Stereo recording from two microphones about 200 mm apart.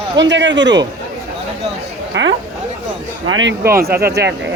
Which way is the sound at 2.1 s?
65° right (ahead or behind).